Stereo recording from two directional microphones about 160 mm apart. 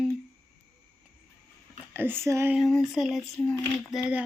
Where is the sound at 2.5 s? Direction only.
Centre (ahead or behind).